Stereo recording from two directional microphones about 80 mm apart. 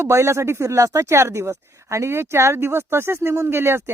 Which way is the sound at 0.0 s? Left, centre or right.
Right.